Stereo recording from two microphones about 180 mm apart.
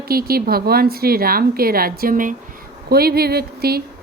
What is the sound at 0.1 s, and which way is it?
Speech, 55° right (ahead or behind).